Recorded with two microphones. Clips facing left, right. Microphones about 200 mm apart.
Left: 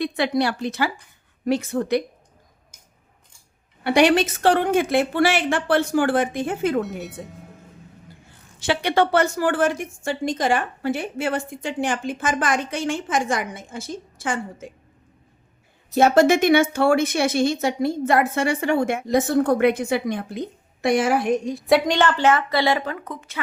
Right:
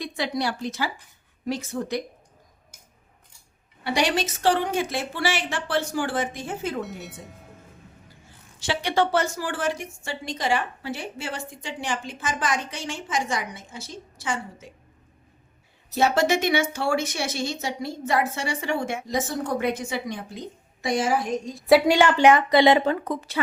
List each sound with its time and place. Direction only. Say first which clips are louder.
0.0 s speech: left 6 dB; 65° left (ahead or behind)
3.8 s speech: left 7 dB; 60° left (ahead or behind)
7.0 s speech: left 6 dB; centre (ahead or behind)
8.5 s a woman's voice: left 4 dB; 55° left (ahead or behind)
16.0 s speech: left 6 dB; 50° left (ahead or behind)
21.7 s a woman's voice: right 1 dB; 10° right (ahead or behind); by 23.4 s 35° right (ahead or behind)